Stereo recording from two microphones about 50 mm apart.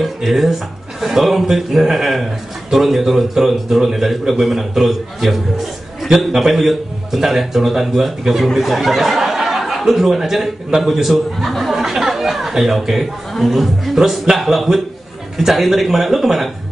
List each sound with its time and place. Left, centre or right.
0.0 s a man's voice: centre